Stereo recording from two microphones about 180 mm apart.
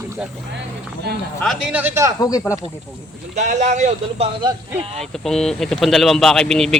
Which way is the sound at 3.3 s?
40° right (ahead or behind).